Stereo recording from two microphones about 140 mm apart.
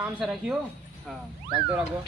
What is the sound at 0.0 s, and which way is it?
Speech, 5° right (ahead or behind).